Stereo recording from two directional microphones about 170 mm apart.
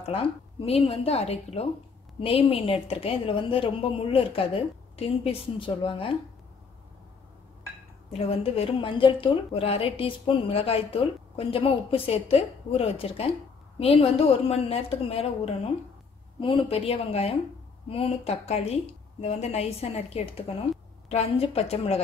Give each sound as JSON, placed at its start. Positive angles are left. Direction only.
{"t": 0.0, "sound": "a woman's voice", "side_deg": 35}
{"t": 8.1, "sound": "a woman's voice", "side_deg": 35}